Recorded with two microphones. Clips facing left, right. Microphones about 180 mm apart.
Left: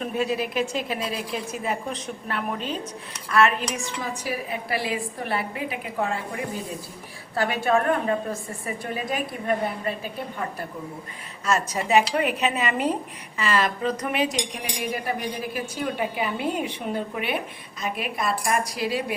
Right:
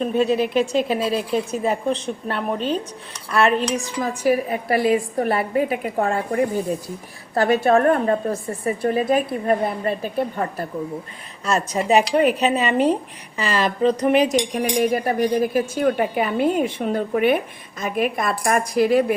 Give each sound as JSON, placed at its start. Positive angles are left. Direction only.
{"t": 0.0, "sound": "a woman's voice", "side_deg": -30}
{"t": 0.6, "sound": "a woman's voice", "side_deg": 5}
{"t": 0.9, "sound": "a woman's voice", "side_deg": -30}
{"t": 11.4, "sound": "a woman's voice", "side_deg": -30}
{"t": 14.5, "sound": "speech", "side_deg": -50}